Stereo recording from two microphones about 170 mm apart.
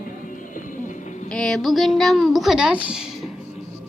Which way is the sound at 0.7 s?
50° left (ahead or behind).